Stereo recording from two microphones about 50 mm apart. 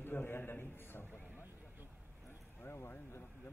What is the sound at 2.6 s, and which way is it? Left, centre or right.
Speech, left.